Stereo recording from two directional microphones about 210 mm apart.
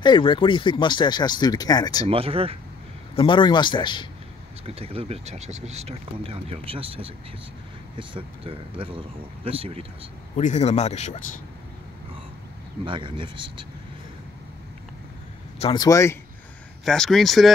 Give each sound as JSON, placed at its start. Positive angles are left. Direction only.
{"t": 0.0, "sound": "speech", "side_deg": 20}
{"t": 2.0, "sound": "speech", "side_deg": -25}
{"t": 3.2, "sound": "speech", "side_deg": 25}
{"t": 4.6, "sound": "speech", "side_deg": -25}
{"t": 10.3, "sound": "speech", "side_deg": 35}
{"t": 12.8, "sound": "speech", "side_deg": -25}
{"t": 15.6, "sound": "speech", "side_deg": 20}
{"t": 16.8, "sound": "speech", "side_deg": 0}